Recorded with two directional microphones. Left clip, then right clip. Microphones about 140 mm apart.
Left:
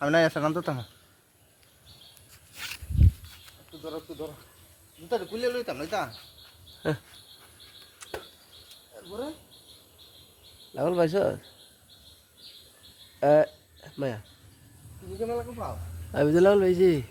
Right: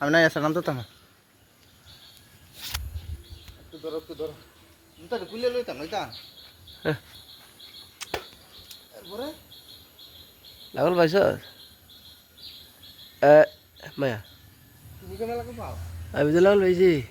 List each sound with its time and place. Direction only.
0.0 s speech: 5° right (ahead or behind)
3.8 s speech: 30° left (ahead or behind)
5.0 s speech: 90° left
6.8 s speech: 5° left (ahead or behind)
7.9 s a sound: 30° right (ahead or behind)
10.8 s speech: 20° right (ahead or behind)
13.1 s speech: 20° right (ahead or behind)
15.2 s speech: 20° left (ahead or behind)
16.1 s speech: 5° left (ahead or behind)